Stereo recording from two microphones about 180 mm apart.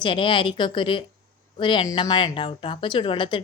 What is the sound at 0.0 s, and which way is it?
A woman's voice, 30° left (ahead or behind).